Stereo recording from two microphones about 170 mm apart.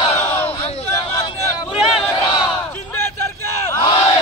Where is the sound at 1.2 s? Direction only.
25° left (ahead or behind).